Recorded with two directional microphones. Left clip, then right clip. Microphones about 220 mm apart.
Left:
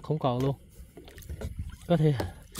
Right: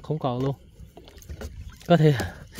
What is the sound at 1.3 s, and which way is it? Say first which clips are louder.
Rowboat: right 2 dB; 20° right (ahead or behind).